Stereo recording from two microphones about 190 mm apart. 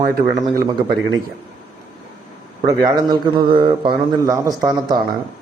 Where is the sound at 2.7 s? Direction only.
20° right (ahead or behind).